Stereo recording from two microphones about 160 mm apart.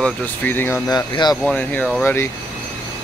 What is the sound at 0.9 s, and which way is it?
Speech, 25° left (ahead or behind).